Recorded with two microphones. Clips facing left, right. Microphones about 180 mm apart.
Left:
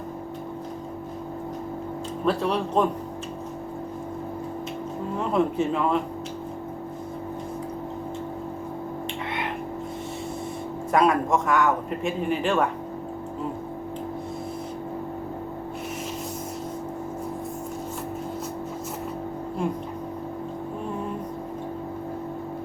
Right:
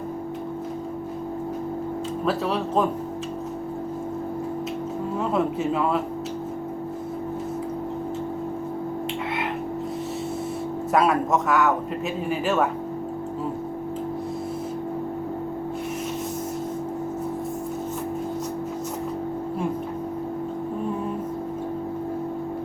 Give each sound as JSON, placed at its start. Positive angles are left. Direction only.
{"t": 2.2, "sound": "a man's voice", "side_deg": -5}
{"t": 5.3, "sound": "a man's voice", "side_deg": -5}
{"t": 10.9, "sound": "a man's voice", "side_deg": -5}